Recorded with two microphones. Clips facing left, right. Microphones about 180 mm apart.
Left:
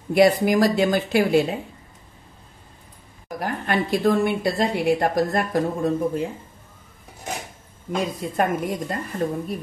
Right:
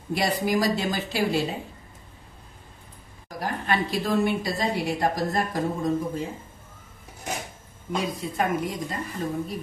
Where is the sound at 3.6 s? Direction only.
55° left (ahead or behind).